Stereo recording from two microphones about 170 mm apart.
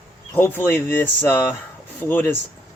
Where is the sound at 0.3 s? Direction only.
15° left (ahead or behind).